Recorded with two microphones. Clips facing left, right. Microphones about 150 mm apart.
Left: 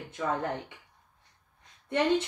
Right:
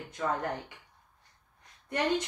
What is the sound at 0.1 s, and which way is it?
Speech, 25° left (ahead or behind).